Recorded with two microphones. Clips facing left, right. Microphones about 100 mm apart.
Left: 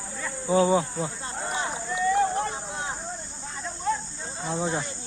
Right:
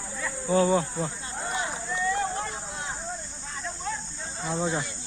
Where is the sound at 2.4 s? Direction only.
25° left (ahead or behind).